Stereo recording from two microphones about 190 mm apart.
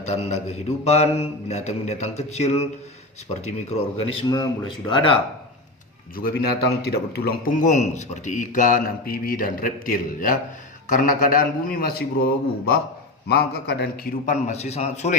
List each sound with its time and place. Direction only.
0.0 s a man's voice: 35° left (ahead or behind)
6.1 s a man's voice: 50° left (ahead or behind); by 15.2 s 35° left (ahead or behind)